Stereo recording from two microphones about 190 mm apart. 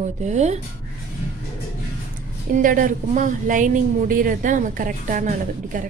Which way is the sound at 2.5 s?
45° right (ahead or behind).